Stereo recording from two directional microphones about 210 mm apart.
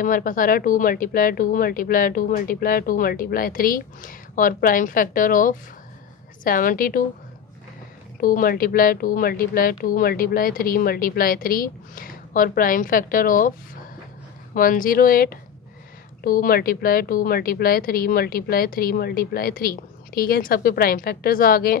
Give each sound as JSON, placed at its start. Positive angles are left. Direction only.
{"t": 0.0, "sound": "speech", "side_deg": 40}
{"t": 8.2, "sound": "speech", "side_deg": 40}
{"t": 14.5, "sound": "speech", "side_deg": 40}